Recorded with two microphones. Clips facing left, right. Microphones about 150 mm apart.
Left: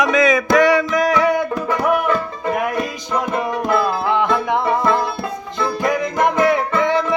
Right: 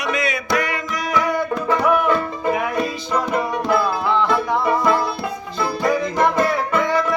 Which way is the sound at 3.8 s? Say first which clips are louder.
Left 1 dB; 15° left (ahead or behind).